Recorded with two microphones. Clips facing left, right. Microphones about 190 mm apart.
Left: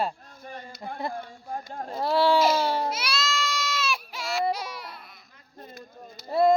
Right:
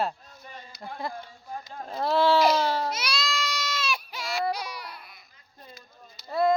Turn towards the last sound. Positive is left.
turn(degrees=30)  # may be behind; listen again after turning